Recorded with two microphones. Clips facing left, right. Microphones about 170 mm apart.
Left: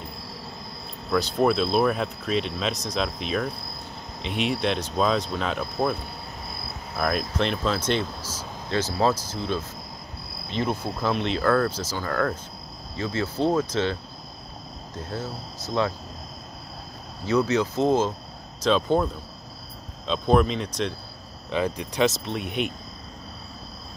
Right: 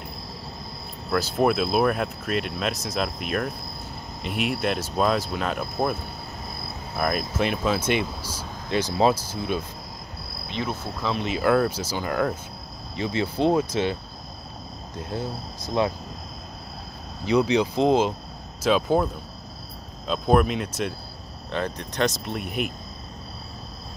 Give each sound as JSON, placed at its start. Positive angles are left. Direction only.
{"t": 1.1, "sound": "speech", "side_deg": -5}
{"t": 7.0, "sound": "speech", "side_deg": -5}
{"t": 10.7, "sound": "speech", "side_deg": 10}
{"t": 11.1, "sound": "speech", "side_deg": -10}
{"t": 15.0, "sound": "speech", "side_deg": -15}
{"t": 17.2, "sound": "speech", "side_deg": -15}
{"t": 20.1, "sound": "speech", "side_deg": -5}
{"t": 21.5, "sound": "speech", "side_deg": 5}